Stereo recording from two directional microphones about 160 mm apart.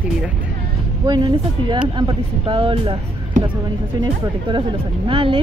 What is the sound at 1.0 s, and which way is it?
Speech, 25° right (ahead or behind).